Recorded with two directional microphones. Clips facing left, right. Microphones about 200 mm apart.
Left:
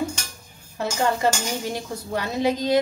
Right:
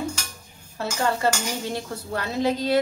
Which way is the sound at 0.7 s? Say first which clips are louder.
Left 2 dB; 15° left (ahead or behind).